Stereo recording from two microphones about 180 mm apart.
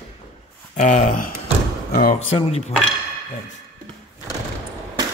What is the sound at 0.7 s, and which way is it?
Speech, 40° left (ahead or behind).